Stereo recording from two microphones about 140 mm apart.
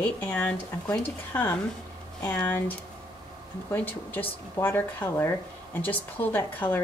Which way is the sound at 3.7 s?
10° left (ahead or behind).